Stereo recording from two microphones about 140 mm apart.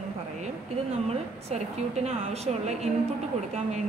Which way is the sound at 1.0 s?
50° right (ahead or behind).